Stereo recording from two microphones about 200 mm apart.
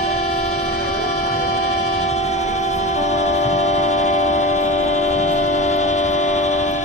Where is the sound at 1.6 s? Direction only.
35° left (ahead or behind).